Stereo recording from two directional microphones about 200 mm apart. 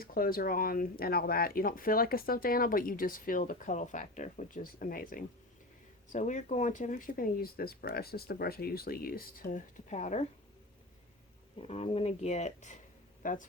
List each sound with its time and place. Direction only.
0.0 s speech: 45° left (ahead or behind)
11.6 s speech: 30° left (ahead or behind)